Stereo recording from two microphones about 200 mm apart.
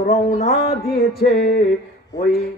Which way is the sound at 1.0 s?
50° left (ahead or behind).